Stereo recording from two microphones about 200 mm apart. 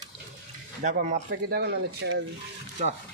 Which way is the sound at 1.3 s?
50° right (ahead or behind).